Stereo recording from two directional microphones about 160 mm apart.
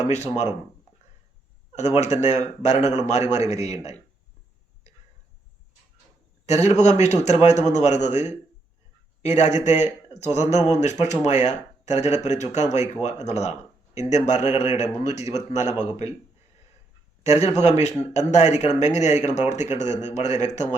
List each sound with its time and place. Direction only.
0.1 s speech: 45° left (ahead or behind)
2.2 s speech: 45° left (ahead or behind)
6.4 s speech: 45° left (ahead or behind)
15.6 s a man's voice: 15° right (ahead or behind)
17.2 s speech: 40° left (ahead or behind)